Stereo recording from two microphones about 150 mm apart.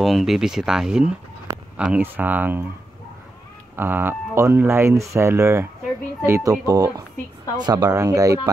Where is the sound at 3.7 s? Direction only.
15° right (ahead or behind).